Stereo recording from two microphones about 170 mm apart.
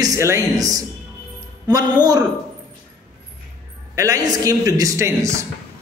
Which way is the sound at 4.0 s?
20° right (ahead or behind).